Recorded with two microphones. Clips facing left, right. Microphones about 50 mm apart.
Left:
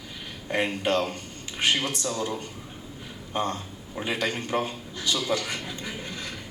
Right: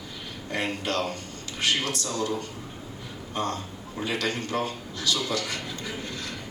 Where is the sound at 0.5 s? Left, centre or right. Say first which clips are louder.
Left 3 dB; centre.